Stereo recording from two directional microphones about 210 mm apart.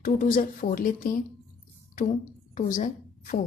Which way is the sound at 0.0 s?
40° left (ahead or behind).